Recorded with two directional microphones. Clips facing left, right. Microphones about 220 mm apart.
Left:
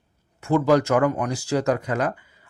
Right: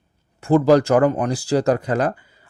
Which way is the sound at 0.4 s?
35° right (ahead or behind).